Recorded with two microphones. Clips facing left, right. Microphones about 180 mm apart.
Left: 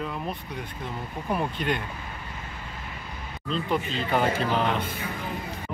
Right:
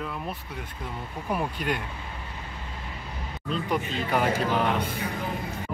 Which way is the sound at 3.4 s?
10° right (ahead or behind).